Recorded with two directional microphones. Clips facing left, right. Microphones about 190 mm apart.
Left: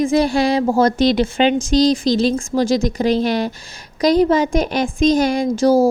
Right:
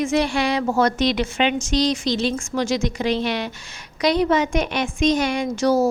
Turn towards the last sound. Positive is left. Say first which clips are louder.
# left 5 dB
turn(degrees=35)  # may be behind; listen again after turning